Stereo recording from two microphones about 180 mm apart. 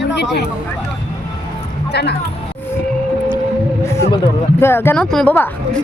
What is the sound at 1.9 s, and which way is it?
Speech, 65° left (ahead or behind).